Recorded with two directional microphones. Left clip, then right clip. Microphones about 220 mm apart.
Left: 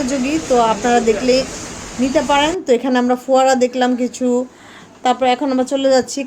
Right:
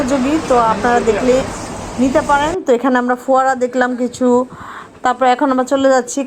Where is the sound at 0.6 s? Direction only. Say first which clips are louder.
Left 1 dB; 5° right (ahead or behind).